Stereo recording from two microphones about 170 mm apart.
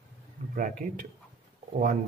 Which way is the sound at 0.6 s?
50° right (ahead or behind).